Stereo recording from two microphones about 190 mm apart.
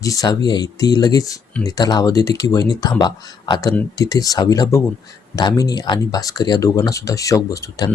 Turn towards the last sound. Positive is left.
turn(degrees=20)  # may be behind; listen again after turning